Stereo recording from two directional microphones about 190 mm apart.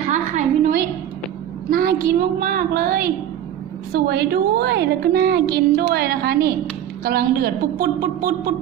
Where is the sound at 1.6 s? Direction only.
50° right (ahead or behind).